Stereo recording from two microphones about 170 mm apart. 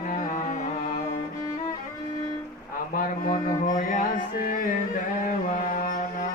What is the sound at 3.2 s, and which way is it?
Music, 50° left (ahead or behind).